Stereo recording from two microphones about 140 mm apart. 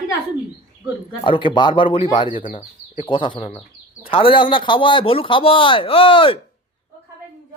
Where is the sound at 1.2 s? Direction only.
35° left (ahead or behind).